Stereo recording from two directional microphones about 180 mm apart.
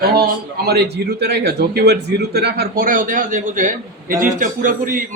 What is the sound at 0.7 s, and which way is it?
A man's voice, 65° right (ahead or behind).